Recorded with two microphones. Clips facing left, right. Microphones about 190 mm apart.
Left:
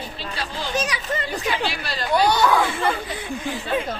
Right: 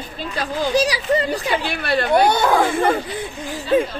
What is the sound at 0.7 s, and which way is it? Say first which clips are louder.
Speech: right 7 dB; 30° right (ahead or behind).